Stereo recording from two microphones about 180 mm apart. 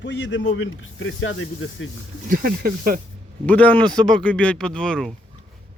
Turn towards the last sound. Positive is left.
turn(degrees=5)  # may be behind; listen again after turning